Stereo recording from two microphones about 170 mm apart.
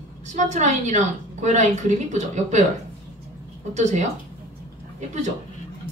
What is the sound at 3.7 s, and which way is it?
Speech, 45° right (ahead or behind).